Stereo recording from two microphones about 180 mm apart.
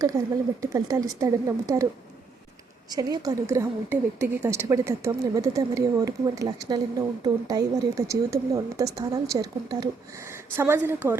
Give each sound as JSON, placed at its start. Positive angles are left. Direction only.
{"t": 0.1, "sound": "a woman's voice", "side_deg": -15}
{"t": 2.9, "sound": "a woman's voice", "side_deg": -20}